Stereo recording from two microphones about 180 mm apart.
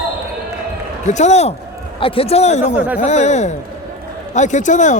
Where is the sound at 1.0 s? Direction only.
40° left (ahead or behind).